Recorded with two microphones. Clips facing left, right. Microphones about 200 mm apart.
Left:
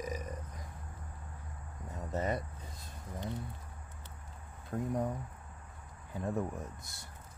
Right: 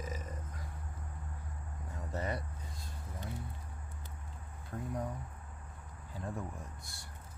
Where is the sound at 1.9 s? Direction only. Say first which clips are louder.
Left 4 dB; 20° left (ahead or behind).